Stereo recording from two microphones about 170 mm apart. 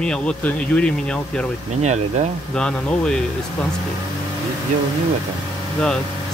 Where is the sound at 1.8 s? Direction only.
45° right (ahead or behind).